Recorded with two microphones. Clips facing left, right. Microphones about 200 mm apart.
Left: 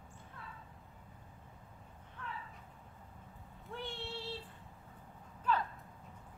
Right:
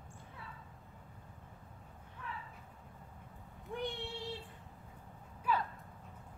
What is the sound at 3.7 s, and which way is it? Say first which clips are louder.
Child singing: right 3 dB; 15° right (ahead or behind).